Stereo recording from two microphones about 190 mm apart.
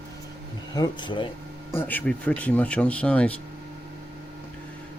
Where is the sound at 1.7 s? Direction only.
10° left (ahead or behind).